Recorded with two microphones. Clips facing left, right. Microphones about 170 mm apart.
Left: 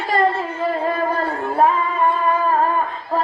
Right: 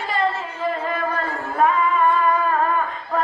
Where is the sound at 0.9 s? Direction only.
35° left (ahead or behind).